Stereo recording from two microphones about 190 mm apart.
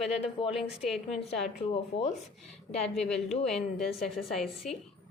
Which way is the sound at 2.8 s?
5° left (ahead or behind).